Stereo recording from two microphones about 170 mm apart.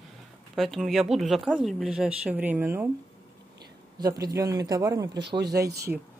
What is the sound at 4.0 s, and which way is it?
Speech, 20° right (ahead or behind).